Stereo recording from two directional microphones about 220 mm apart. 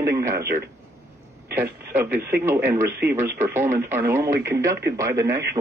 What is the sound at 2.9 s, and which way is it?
Speech, 45° right (ahead or behind).